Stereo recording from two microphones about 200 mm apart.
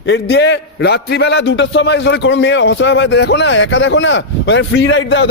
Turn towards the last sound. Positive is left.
turn(degrees=65)  # may be behind; listen again after turning